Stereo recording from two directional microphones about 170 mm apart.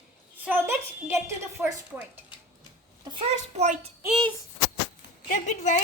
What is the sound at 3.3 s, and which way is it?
Speech, 45° right (ahead or behind).